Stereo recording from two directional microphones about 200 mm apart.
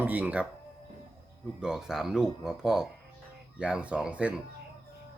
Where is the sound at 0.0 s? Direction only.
10° right (ahead or behind).